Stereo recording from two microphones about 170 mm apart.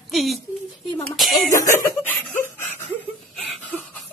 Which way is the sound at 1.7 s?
15° left (ahead or behind).